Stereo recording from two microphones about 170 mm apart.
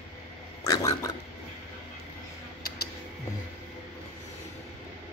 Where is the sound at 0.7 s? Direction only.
20° left (ahead or behind).